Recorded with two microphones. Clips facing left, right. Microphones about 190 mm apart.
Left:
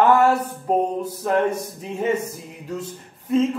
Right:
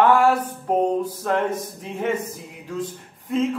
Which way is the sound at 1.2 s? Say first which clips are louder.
Left 2 dB; 10° left (ahead or behind).